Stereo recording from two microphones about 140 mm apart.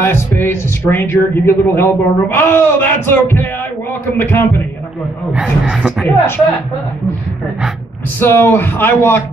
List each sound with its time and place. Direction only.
0.0 s speech: 15° left (ahead or behind)
5.3 s a man's voice: 5° right (ahead or behind)
6.0 s speech: 15° left (ahead or behind)
8.2 s speech: 15° left (ahead or behind)